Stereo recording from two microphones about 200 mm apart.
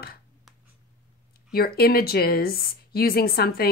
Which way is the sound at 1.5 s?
50° left (ahead or behind).